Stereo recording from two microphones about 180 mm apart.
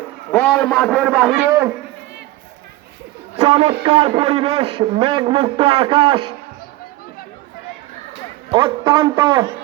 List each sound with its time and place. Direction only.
0.3 s a man's voice: 10° left (ahead or behind); by 1.7 s 15° right (ahead or behind)
3.4 s a man's voice: 35° right (ahead or behind)
8.4 s a man's voice: 20° right (ahead or behind)